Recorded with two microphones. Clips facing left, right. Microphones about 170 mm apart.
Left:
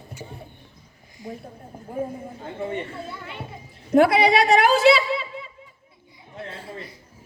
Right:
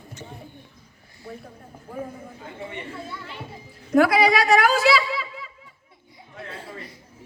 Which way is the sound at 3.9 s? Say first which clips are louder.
Left 1 dB; 30° left (ahead or behind).